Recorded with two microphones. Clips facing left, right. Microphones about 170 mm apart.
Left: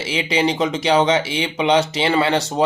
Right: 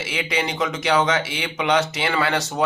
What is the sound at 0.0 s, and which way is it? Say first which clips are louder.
Speech: left 6 dB; 30° left (ahead or behind).